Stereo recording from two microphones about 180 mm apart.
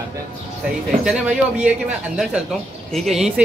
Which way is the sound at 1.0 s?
5° right (ahead or behind).